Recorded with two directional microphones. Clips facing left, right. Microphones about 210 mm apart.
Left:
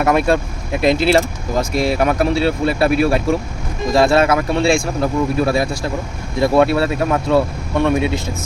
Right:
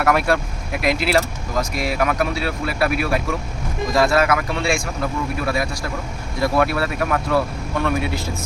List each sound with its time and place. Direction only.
0.0 s speech: 20° left (ahead or behind)